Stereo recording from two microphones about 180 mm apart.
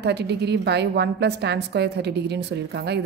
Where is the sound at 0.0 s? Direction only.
65° right (ahead or behind).